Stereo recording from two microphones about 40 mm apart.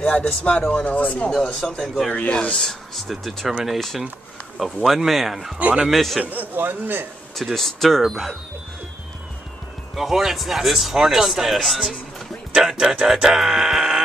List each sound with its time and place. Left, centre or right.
0.0 s speech: left
1.3 s speech: centre
5.6 s a man's voice: right
5.9 s speech: centre
6.2 s speech: right
7.3 s speech: centre
9.9 s speech: centre